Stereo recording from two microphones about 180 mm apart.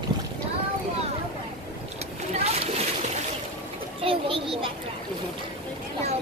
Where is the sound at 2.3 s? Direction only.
35° right (ahead or behind).